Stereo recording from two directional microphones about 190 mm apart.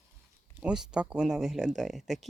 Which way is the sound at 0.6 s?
5° right (ahead or behind).